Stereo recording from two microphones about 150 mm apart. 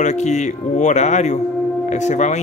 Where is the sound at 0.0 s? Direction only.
50° left (ahead or behind).